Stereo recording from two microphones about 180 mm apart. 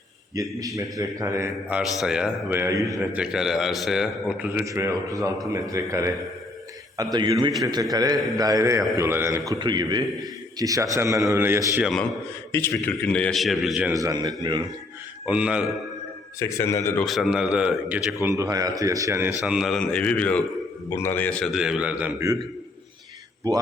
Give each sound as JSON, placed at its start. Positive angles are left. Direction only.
{"t": 0.9, "sound": "a man's voice", "side_deg": -15}
{"t": 1.8, "sound": "a man's voice", "side_deg": -5}
{"t": 4.6, "sound": "a man's voice", "side_deg": -15}
{"t": 12.5, "sound": "a man's voice", "side_deg": 10}
{"t": 13.9, "sound": "a man's voice", "side_deg": -20}
{"t": 15.3, "sound": "a man's voice", "side_deg": -5}
{"t": 16.4, "sound": "a man's voice", "side_deg": 15}
{"t": 17.1, "sound": "a man's voice", "side_deg": 0}
{"t": 19.4, "sound": "a man's voice", "side_deg": -5}